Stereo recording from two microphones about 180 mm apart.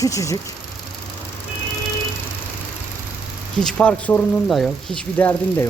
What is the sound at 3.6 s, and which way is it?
Speech, 5° left (ahead or behind).